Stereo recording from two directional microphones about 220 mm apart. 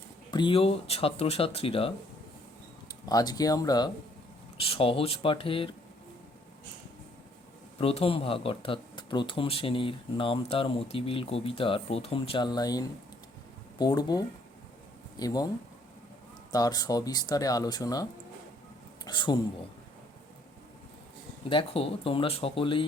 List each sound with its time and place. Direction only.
0.3 s speech: 20° left (ahead or behind)
3.1 s speech: 15° left (ahead or behind)
7.8 s speech: 25° left (ahead or behind)
16.5 s speech: 15° left (ahead or behind)
21.5 s speech: 25° left (ahead or behind)